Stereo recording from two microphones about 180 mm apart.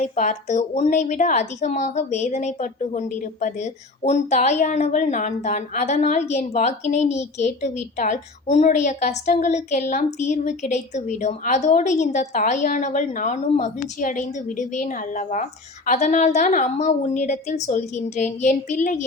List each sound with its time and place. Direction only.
0.0 s a woman's voice: 40° left (ahead or behind)